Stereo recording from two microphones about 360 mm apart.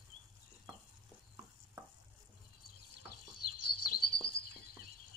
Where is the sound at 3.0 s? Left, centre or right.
Left.